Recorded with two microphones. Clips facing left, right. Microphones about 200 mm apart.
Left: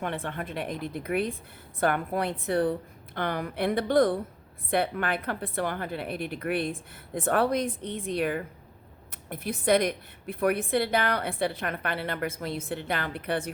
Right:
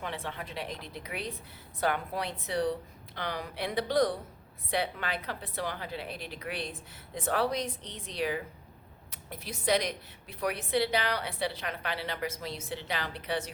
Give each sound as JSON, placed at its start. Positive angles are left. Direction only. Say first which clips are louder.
{"t": 0.0, "sound": "a woman's voice", "louder": "left 5 dB", "side_deg": 55}